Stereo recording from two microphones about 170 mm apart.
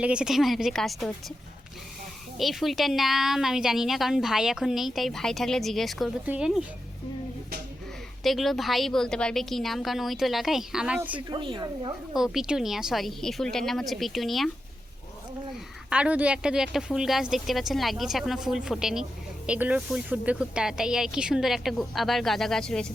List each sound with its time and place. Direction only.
0.0 s a woman's voice: 5° right (ahead or behind)
2.4 s a woman's voice: centre (ahead or behind)
8.2 s a woman's voice: centre (ahead or behind)
11.3 s speech: 30° right (ahead or behind)
12.2 s a woman's voice: 5° right (ahead or behind)
15.9 s a woman's voice: 5° right (ahead or behind)